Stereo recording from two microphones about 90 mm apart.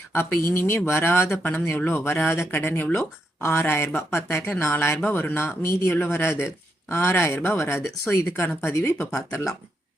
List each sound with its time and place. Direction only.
0.1 s speech: 30° left (ahead or behind)